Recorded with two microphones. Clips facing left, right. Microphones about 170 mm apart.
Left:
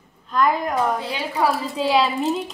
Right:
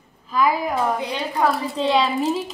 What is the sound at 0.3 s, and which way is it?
A woman's voice, 5° right (ahead or behind).